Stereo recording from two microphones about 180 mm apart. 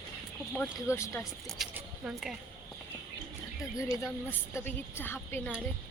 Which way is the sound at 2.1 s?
Centre (ahead or behind).